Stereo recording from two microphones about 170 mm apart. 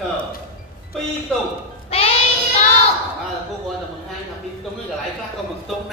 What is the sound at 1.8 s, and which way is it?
Child singing, 35° left (ahead or behind).